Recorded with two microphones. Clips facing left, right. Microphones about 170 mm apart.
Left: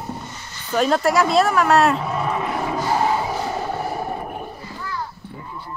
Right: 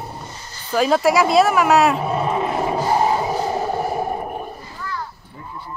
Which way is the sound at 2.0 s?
25° right (ahead or behind).